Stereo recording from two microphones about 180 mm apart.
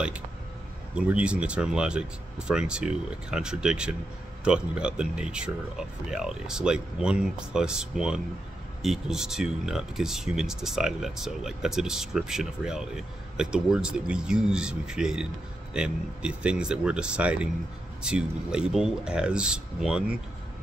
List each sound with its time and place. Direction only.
0.9 s speech: 5° right (ahead or behind)